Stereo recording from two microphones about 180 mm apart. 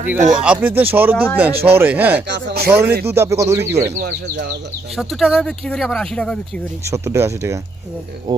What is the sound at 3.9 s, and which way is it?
Speech, 60° right (ahead or behind).